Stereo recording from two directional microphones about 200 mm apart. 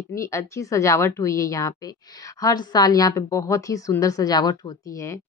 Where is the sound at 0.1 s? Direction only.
15° left (ahead or behind).